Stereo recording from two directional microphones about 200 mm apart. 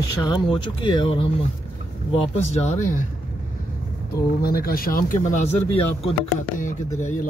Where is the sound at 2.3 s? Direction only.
35° left (ahead or behind).